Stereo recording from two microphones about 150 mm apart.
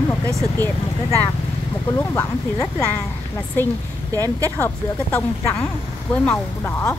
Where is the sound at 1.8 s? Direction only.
20° left (ahead or behind).